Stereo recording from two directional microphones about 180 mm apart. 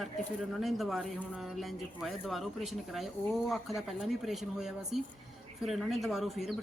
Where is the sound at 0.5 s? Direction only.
Centre (ahead or behind).